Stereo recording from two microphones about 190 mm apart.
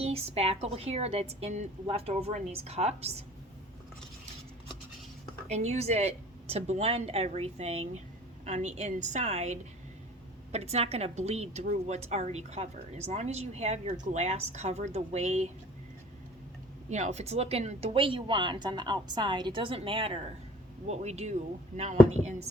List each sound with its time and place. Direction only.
0.0 s a woman's voice: 30° right (ahead or behind)
5.5 s a woman's voice: 35° right (ahead or behind)
16.9 s a woman's voice: 35° right (ahead or behind)